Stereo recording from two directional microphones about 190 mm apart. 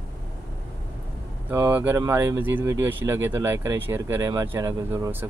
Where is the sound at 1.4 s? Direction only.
10° right (ahead or behind).